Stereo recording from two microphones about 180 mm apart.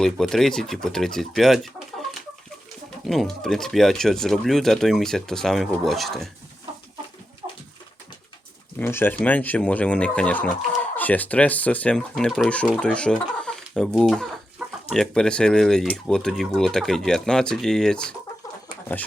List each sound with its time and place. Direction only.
0.0 s speech: 5° left (ahead or behind)
3.1 s speech: centre (ahead or behind)
7.4 s dog: 30° right (ahead or behind)
8.8 s speech: 10° left (ahead or behind)